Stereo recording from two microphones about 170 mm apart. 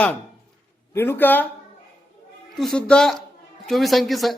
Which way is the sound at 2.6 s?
5° left (ahead or behind).